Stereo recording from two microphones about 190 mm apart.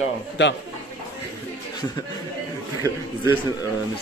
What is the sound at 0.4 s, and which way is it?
Speech, 70° left (ahead or behind).